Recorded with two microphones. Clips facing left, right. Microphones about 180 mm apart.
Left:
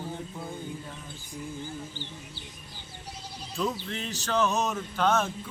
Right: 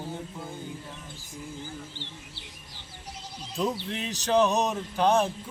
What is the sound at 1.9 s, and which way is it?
Bird, 70° right (ahead or behind).